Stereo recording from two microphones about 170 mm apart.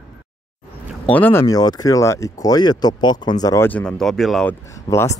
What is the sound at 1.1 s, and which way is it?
Speech, 10° left (ahead or behind).